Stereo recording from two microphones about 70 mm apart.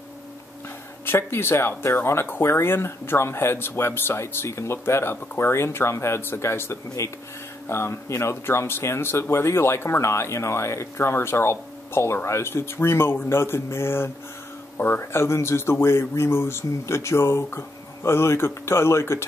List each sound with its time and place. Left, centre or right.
1.0 s speech: left